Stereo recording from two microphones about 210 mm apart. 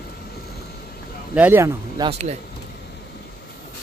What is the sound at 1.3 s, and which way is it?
Speech, 10° right (ahead or behind).